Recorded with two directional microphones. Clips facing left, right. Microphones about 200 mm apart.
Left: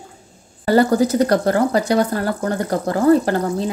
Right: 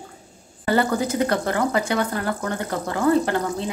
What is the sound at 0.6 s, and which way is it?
Speech, 40° left (ahead or behind).